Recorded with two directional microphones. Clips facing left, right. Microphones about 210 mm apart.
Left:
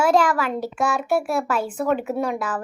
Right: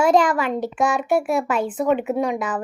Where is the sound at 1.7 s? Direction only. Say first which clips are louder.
Right 2 dB; 5° right (ahead or behind).